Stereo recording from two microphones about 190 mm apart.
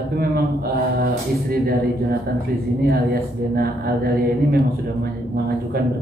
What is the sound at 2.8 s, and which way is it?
Speech, 55° right (ahead or behind).